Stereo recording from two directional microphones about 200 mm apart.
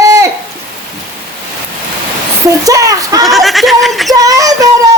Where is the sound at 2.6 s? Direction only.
15° right (ahead or behind).